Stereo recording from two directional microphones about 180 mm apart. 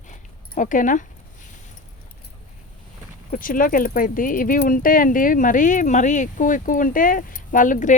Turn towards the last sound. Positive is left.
turn(degrees=45)  # may be behind; listen again after turning